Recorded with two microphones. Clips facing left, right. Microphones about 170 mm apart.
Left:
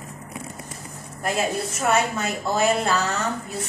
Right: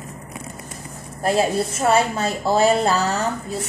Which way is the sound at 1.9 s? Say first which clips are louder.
Right 3 dB; 30° right (ahead or behind).